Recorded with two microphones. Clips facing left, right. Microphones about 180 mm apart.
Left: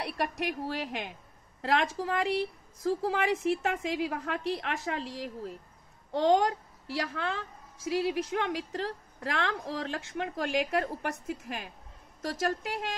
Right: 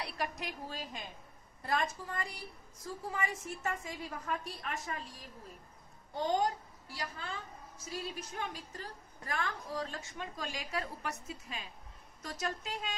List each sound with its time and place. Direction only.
0.0 s a woman's voice: 65° left (ahead or behind)
1.6 s a woman's voice: 90° left; by 11.7 s 60° left (ahead or behind)